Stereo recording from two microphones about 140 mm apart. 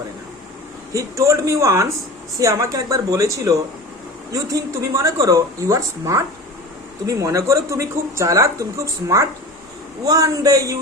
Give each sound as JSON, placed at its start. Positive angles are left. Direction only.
{"t": 0.9, "sound": "speech", "side_deg": -20}